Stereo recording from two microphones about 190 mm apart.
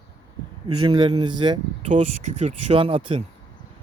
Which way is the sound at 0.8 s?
25° right (ahead or behind).